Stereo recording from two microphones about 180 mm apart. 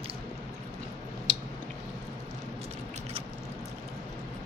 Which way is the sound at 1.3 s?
40° right (ahead or behind).